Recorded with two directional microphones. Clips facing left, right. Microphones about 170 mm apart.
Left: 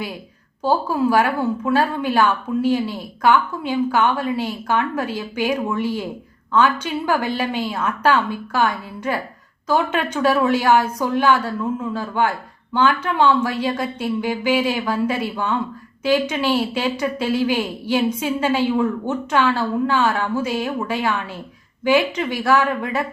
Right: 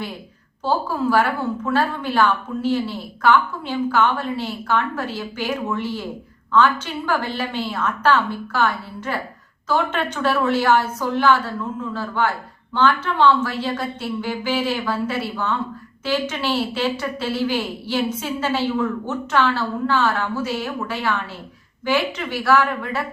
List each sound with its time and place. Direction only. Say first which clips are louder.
1.1 s a woman's voice: left 2 dB; 15° left (ahead or behind)